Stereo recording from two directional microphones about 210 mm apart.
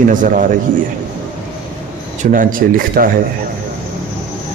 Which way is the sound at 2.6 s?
45° right (ahead or behind).